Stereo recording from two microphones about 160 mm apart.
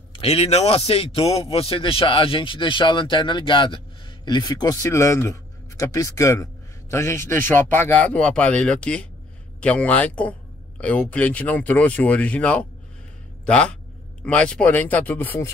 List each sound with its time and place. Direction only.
0.1 s a man's voice: 40° left (ahead or behind); by 15.5 s 15° left (ahead or behind)